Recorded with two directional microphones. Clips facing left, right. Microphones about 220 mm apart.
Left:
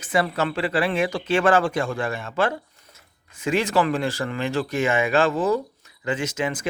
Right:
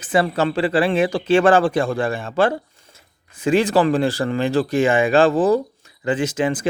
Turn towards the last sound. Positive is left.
turn(degrees=-30)  # may be behind; listen again after turning